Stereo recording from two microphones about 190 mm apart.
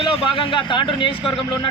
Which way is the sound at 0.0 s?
25° left (ahead or behind).